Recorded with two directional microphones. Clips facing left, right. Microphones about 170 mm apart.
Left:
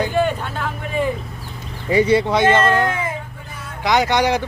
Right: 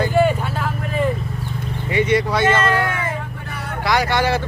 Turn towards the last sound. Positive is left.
turn(degrees=15)  # may be behind; listen again after turning